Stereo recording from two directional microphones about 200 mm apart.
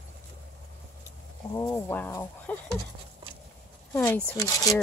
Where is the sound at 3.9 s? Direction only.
10° left (ahead or behind).